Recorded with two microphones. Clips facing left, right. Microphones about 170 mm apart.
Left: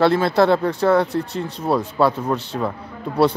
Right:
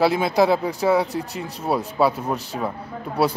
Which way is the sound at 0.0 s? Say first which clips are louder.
Left 2 dB; 5° right (ahead or behind).